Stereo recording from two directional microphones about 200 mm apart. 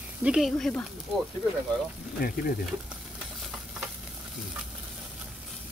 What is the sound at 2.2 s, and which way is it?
Speech, 45° left (ahead or behind).